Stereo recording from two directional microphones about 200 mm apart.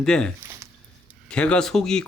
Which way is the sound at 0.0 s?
5° left (ahead or behind).